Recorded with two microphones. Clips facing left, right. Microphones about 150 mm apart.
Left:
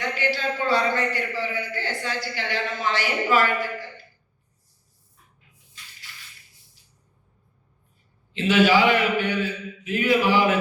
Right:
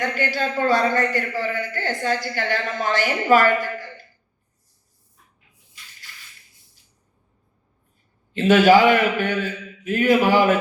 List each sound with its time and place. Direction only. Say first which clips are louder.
0.0 s a man's voice: right 2 dB; 45° right (ahead or behind)
8.3 s a man's voice: right 5 dB; 45° right (ahead or behind)